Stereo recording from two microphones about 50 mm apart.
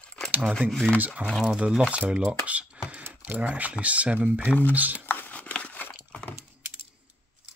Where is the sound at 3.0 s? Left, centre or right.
Right.